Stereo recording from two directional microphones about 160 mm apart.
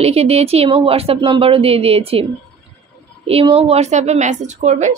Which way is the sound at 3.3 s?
35° right (ahead or behind).